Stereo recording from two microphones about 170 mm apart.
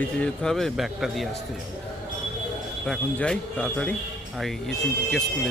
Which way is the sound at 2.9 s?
5° left (ahead or behind).